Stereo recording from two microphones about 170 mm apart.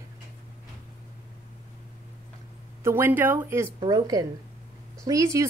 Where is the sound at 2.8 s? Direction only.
15° right (ahead or behind).